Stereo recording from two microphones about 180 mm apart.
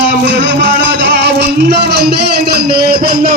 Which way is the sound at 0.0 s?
80° right.